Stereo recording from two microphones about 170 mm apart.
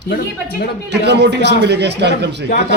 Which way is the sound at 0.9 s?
80° right.